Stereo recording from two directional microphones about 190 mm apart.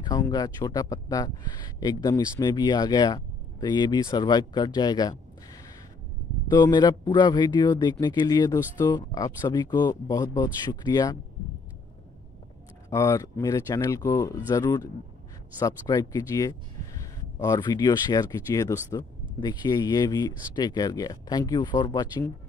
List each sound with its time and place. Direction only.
0.0 s speech: 20° left (ahead or behind)
12.9 s speech: 15° left (ahead or behind)